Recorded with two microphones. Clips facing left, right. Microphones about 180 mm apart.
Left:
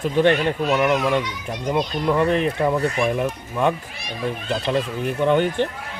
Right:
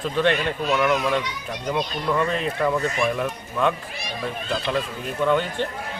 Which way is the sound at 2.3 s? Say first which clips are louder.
Left 5 dB; 60° left (ahead or behind).